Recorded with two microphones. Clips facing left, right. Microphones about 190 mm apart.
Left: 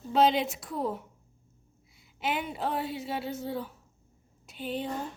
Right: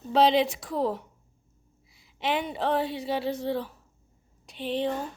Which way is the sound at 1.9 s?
Centre (ahead or behind).